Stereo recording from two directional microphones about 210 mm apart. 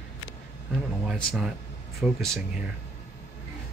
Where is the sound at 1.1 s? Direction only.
Centre (ahead or behind).